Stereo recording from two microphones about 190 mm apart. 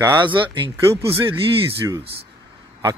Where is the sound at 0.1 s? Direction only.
25° right (ahead or behind).